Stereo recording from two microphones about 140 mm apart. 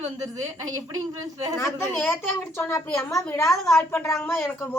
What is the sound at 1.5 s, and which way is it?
Speech, 15° left (ahead or behind).